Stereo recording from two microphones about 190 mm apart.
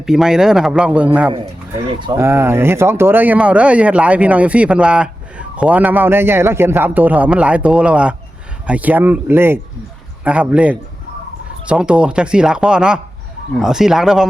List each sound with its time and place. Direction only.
0.0 s a man's voice: 5° right (ahead or behind)